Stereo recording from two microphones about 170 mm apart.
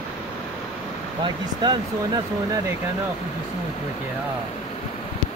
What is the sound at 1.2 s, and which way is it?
Speech, 25° right (ahead or behind).